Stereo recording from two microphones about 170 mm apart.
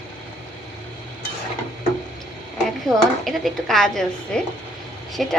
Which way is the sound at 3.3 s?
Centre (ahead or behind).